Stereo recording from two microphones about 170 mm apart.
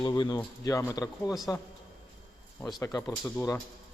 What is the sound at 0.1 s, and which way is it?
A man's voice, 25° left (ahead or behind).